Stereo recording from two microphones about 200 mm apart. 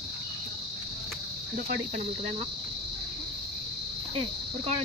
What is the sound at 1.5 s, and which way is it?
Speech, 40° right (ahead or behind).